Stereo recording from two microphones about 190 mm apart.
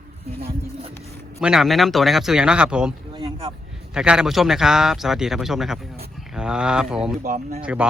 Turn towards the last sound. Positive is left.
turn(degrees=-45)  # may be behind; listen again after turning